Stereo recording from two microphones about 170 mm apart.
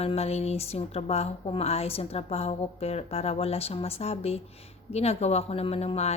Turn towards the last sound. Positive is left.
turn(degrees=40)  # may be behind; listen again after turning